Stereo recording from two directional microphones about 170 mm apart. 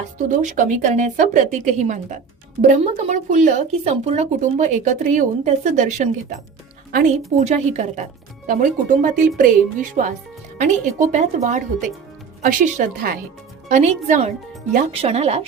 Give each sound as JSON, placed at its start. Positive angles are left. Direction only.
{"t": 0.2, "sound": "speech", "side_deg": -45}
{"t": 7.3, "sound": "a woman's voice", "side_deg": -45}